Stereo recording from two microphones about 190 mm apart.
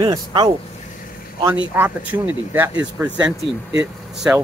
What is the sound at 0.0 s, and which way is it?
Speech, 25° right (ahead or behind).